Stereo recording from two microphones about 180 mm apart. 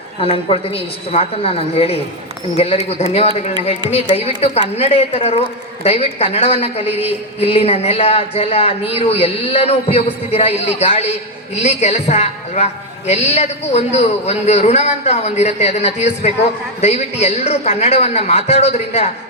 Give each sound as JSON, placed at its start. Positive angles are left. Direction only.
{"t": 0.2, "sound": "a man's voice", "side_deg": 30}